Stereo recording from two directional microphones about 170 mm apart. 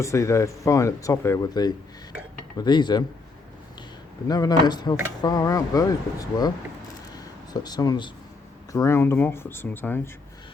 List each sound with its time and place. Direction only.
0.0 s speech: 15° left (ahead or behind)
4.3 s speech: 25° left (ahead or behind)
7.5 s speech: 25° left (ahead or behind)